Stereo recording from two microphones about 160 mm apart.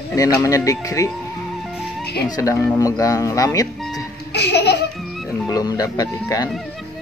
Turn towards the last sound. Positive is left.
turn(degrees=20)  # may be behind; listen again after turning